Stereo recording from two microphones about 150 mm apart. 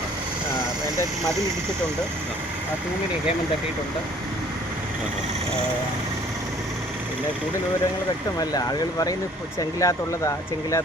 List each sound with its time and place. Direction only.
8.4 s speech: 25° left (ahead or behind)